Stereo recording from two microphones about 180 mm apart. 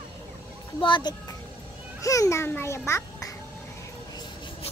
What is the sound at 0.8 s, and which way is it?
A child's voice, 25° left (ahead or behind).